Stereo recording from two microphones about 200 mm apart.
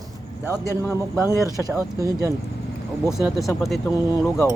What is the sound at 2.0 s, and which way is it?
Speech, 15° right (ahead or behind).